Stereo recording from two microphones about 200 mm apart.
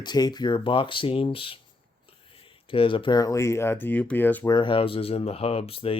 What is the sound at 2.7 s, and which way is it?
Speech, 25° left (ahead or behind).